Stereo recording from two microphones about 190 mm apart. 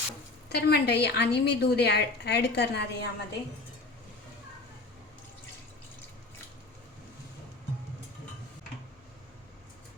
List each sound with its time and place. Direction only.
0.4 s a woman's voice: 60° left (ahead or behind)